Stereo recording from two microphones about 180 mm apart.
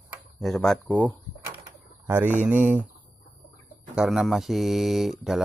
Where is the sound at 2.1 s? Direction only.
10° right (ahead or behind).